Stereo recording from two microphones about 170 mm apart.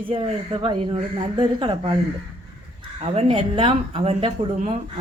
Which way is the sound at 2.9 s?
35° right (ahead or behind).